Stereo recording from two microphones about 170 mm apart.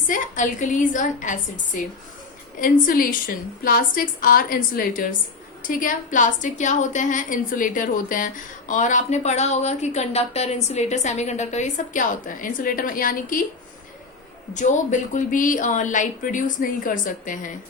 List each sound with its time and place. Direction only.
0.1 s a woman's voice: 50° left (ahead or behind)
14.5 s a woman's voice: 45° left (ahead or behind)